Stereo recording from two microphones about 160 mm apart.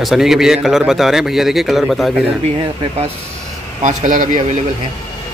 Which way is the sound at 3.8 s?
55° right (ahead or behind).